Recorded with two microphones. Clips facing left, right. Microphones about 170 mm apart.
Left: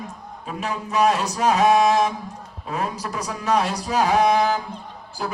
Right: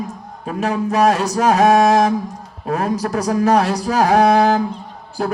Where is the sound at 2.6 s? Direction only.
50° right (ahead or behind).